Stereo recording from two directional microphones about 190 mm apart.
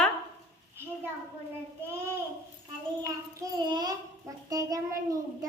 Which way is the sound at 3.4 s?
20° right (ahead or behind).